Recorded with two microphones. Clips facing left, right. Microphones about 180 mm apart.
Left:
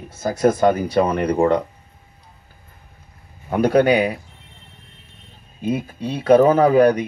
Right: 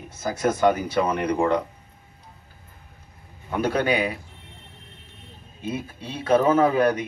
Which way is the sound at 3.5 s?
35° left (ahead or behind).